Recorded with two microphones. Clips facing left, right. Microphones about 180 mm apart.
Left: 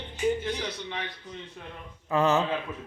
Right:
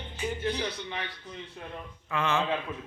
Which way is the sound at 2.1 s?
40° left (ahead or behind).